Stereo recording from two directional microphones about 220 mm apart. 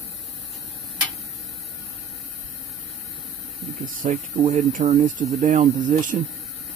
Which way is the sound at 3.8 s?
35° right (ahead or behind).